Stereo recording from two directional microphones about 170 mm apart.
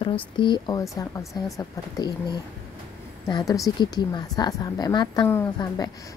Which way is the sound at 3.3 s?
20° left (ahead or behind).